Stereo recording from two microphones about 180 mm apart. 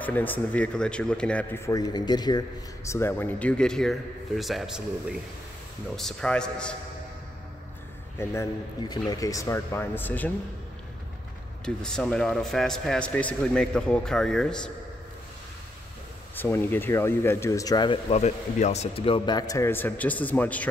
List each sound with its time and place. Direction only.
0.0 s speech: 10° left (ahead or behind)
8.2 s speech: 15° left (ahead or behind)
11.6 s speech: 5° left (ahead or behind)
16.3 s speech: 10° left (ahead or behind)